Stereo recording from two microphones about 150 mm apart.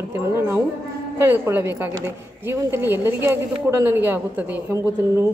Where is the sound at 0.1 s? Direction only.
20° right (ahead or behind).